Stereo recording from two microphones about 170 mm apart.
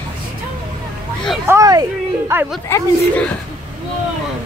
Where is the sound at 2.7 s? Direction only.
10° left (ahead or behind).